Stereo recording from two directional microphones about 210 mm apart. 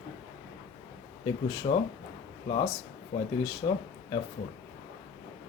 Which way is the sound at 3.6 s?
20° left (ahead or behind).